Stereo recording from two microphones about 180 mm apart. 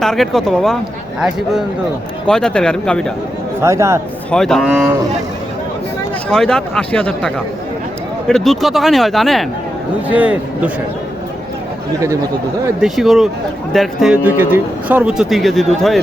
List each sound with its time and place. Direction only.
0.0 s speech: centre (ahead or behind)
2.2 s speech: 5° left (ahead or behind)
3.6 s a man's voice: 15° right (ahead or behind)
4.3 s a man's voice: centre (ahead or behind)
6.2 s a man's voice: 5° left (ahead or behind)
12.8 s speech: centre (ahead or behind)